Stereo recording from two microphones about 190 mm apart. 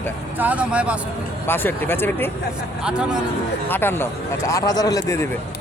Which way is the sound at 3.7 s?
10° left (ahead or behind).